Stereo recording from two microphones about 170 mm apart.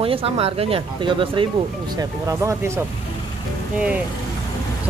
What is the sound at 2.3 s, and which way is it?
Speech, 20° right (ahead or behind).